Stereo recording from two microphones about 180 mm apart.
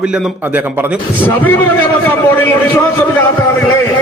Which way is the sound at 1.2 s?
10° left (ahead or behind).